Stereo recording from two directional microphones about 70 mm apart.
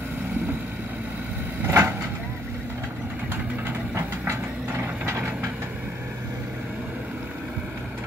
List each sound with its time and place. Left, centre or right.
1.7 s vehicle: right
3.9 s vehicle: right